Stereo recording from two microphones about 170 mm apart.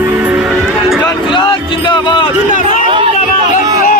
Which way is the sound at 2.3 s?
50° left (ahead or behind).